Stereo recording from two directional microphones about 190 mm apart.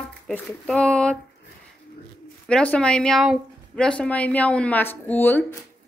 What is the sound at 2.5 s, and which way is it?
A woman's voice, 5° left (ahead or behind).